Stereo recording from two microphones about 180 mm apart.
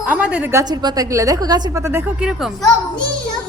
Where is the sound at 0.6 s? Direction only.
20° right (ahead or behind); by 2.6 s 5° right (ahead or behind).